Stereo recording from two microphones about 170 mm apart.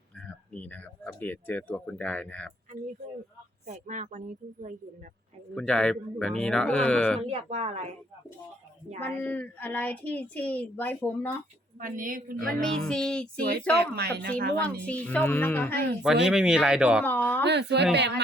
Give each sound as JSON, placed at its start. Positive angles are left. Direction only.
{"t": 0.2, "sound": "speech", "side_deg": 10}
{"t": 3.7, "sound": "a woman's voice", "side_deg": -45}
{"t": 5.5, "sound": "music", "side_deg": 5}
{"t": 7.2, "sound": "a woman's voice", "side_deg": -35}
{"t": 9.0, "sound": "speech", "side_deg": 10}
{"t": 11.8, "sound": "a woman's voice", "side_deg": -50}
{"t": 12.5, "sound": "music", "side_deg": 5}
{"t": 13.7, "sound": "speech", "side_deg": -70}
{"t": 14.8, "sound": "speech", "side_deg": 10}
{"t": 16.2, "sound": "music", "side_deg": -5}
{"t": 17.0, "sound": "speech", "side_deg": 10}
{"t": 17.4, "sound": "speech", "side_deg": -85}